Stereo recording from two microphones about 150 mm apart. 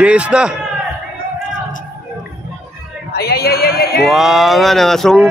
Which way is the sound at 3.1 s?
90° left.